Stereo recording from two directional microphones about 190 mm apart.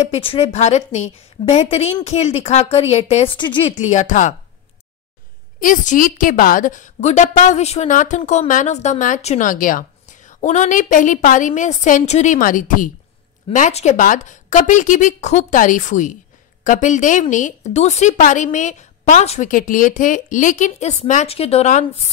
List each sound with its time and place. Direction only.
0.0 s a woman's voice: 30° left (ahead or behind)
3.7 s a woman's voice: 40° left (ahead or behind)
5.6 s a woman's voice: 45° left (ahead or behind)